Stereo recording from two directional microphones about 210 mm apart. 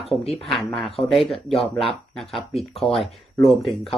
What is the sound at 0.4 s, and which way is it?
Speech, centre (ahead or behind).